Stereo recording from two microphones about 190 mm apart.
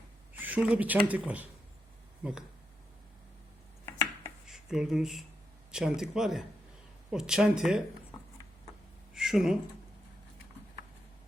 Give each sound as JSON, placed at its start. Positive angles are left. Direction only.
{"t": 0.3, "sound": "speech", "side_deg": -10}
{"t": 3.8, "sound": "chopping", "side_deg": 15}
{"t": 4.4, "sound": "speech", "side_deg": 0}
{"t": 9.1, "sound": "speech", "side_deg": 0}